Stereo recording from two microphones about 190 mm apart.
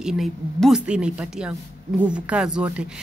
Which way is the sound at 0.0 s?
Centre (ahead or behind).